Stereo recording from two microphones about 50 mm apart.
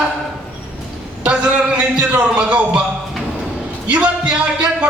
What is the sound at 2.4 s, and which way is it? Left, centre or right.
Speech, right.